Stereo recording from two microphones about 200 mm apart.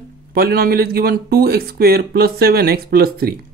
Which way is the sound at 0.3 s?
50° right (ahead or behind).